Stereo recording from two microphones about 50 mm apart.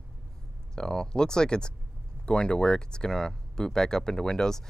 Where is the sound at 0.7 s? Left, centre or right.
Centre.